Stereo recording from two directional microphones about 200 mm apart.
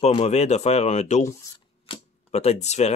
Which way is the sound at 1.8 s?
30° left (ahead or behind).